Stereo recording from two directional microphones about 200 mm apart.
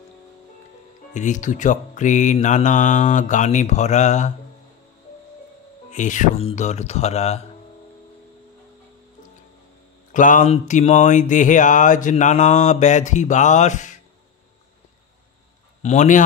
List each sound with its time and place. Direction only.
1.1 s speech: 40° left (ahead or behind)
5.9 s speech: 40° left (ahead or behind)
10.1 s speech: 40° left (ahead or behind)
15.8 s speech: 35° left (ahead or behind)